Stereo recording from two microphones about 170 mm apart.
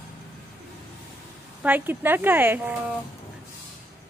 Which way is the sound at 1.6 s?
10° right (ahead or behind).